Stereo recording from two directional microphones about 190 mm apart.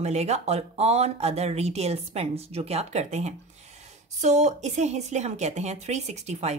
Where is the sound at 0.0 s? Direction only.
35° right (ahead or behind).